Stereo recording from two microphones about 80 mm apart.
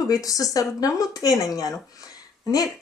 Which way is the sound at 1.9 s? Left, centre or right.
Left.